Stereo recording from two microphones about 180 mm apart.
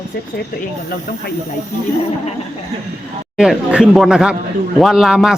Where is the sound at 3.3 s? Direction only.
5° right (ahead or behind).